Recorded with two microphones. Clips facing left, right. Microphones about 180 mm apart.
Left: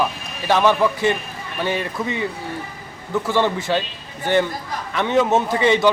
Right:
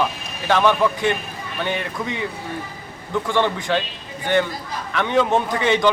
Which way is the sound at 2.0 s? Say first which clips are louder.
Left 2 dB; 5° left (ahead or behind).